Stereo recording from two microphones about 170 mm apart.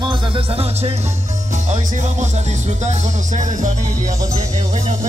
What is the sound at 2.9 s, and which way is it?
Music, 45° right (ahead or behind).